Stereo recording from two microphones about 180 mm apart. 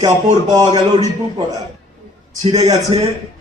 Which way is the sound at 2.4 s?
35° right (ahead or behind).